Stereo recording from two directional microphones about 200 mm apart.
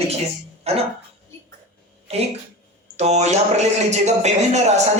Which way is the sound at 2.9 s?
35° right (ahead or behind).